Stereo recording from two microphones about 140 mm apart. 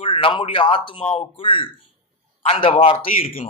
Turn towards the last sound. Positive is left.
turn(degrees=40)  # may be behind; listen again after turning